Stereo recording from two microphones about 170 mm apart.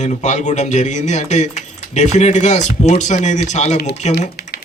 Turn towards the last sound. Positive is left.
turn(degrees=75)  # may be behind; listen again after turning